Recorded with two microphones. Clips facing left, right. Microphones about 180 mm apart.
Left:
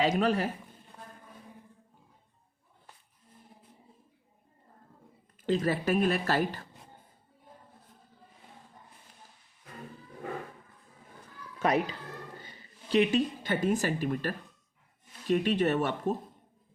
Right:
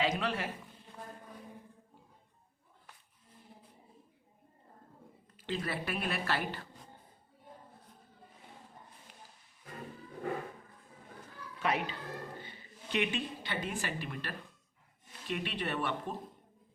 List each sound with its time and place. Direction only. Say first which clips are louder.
0.0 s speech: left 7 dB; 40° left (ahead or behind)
5.4 s speech: left 9 dB; 40° left (ahead or behind)
11.6 s speech: left 6 dB; 40° left (ahead or behind)